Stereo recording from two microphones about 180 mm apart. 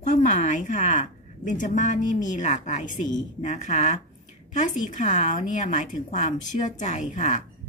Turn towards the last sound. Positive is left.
turn(degrees=45)  # may be behind; listen again after turning